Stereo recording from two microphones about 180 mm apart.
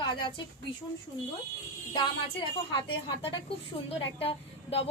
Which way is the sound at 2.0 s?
25° left (ahead or behind).